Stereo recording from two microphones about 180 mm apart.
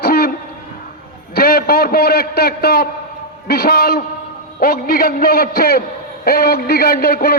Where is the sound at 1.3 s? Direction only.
55° left (ahead or behind).